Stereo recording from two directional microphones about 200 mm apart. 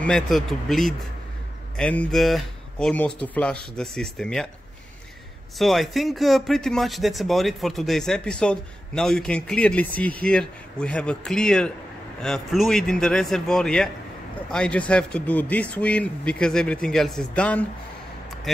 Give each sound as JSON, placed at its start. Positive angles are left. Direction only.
{"t": 0.0, "sound": "speech", "side_deg": 0}
{"t": 5.6, "sound": "speech", "side_deg": 0}